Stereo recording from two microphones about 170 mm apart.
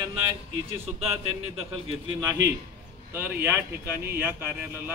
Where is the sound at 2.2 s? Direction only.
15° right (ahead or behind).